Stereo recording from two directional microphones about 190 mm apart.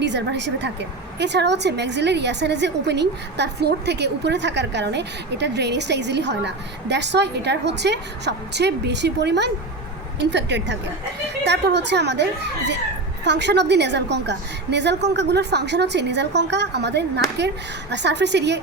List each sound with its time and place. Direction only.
0.0 s a woman's voice: 65° right (ahead or behind)